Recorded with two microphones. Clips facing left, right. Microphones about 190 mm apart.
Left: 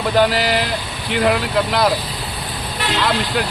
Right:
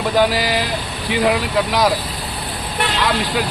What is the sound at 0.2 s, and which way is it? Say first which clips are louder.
Speech: left 1 dB; 10° right (ahead or behind).